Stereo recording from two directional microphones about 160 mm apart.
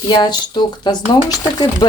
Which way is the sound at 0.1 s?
25° left (ahead or behind).